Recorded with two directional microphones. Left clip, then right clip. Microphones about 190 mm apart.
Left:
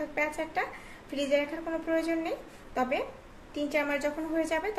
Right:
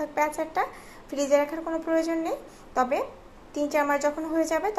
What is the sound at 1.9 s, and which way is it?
Speech, 15° right (ahead or behind).